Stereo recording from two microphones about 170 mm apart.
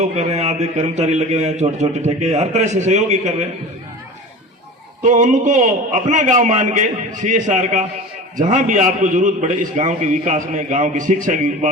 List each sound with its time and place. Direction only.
0.0 s a man's voice: 40° right (ahead or behind)
5.0 s a man's voice: 45° right (ahead or behind)